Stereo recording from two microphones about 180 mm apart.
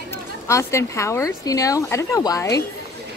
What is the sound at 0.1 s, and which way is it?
Speech, 15° left (ahead or behind).